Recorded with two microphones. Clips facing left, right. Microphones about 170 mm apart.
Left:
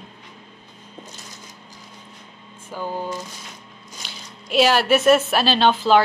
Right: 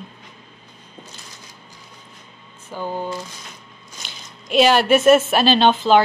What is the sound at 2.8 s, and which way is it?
Speech, 15° right (ahead or behind).